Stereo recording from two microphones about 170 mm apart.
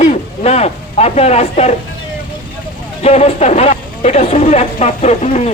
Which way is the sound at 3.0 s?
35° left (ahead or behind).